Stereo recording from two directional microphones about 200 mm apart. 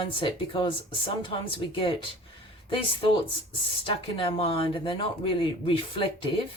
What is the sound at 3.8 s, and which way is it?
Speech, 25° left (ahead or behind).